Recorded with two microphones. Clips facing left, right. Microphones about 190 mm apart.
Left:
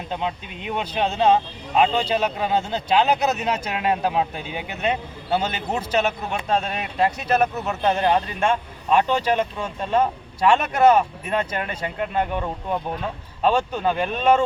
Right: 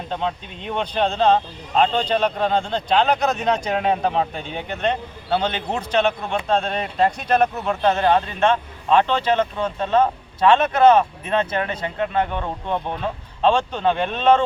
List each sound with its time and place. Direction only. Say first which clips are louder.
0.1 s speech: right 2 dB; 5° left (ahead or behind)
13.4 s speech: right 2 dB; 10° left (ahead or behind)